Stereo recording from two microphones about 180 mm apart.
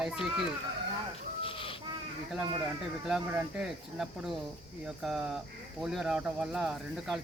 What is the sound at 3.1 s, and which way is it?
Speech, 5° right (ahead or behind).